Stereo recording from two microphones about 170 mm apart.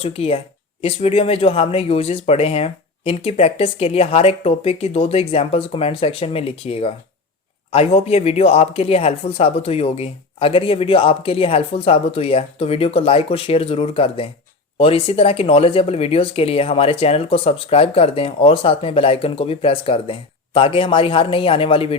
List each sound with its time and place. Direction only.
0.0 s speech: 35° left (ahead or behind)